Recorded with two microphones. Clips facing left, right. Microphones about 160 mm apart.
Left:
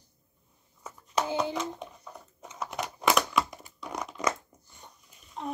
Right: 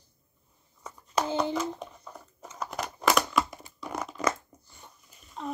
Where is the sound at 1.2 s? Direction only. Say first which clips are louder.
Right 1 dB; 15° left (ahead or behind).